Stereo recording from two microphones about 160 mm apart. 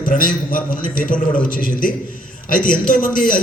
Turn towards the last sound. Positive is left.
turn(degrees=55)  # may be behind; listen again after turning